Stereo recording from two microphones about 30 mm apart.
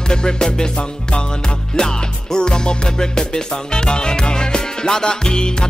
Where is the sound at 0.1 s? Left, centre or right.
Left.